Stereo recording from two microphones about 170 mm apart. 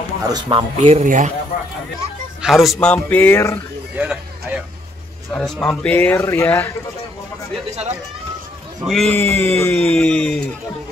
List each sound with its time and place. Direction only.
0.2 s speech: 25° right (ahead or behind)
0.7 s a man's voice: 40° right (ahead or behind)
2.4 s a man's voice: centre (ahead or behind); by 3.5 s 15° left (ahead or behind)
3.9 s a sound: 5° right (ahead or behind)
5.3 s speech: 5° left (ahead or behind)
8.8 s a man's voice: centre (ahead or behind)
9.2 s a man's voice: 10° left (ahead or behind)